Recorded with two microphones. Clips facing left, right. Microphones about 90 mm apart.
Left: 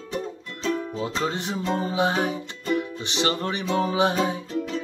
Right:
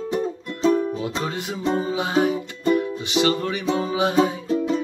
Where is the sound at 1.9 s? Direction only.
25° left (ahead or behind).